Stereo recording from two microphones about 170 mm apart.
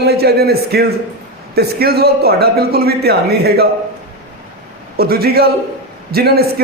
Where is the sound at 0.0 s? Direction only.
70° right (ahead or behind).